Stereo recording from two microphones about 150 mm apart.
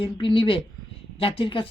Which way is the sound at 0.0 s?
35° left (ahead or behind).